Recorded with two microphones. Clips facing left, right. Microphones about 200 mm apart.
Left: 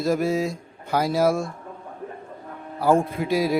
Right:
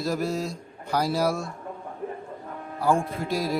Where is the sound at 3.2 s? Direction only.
Centre (ahead or behind).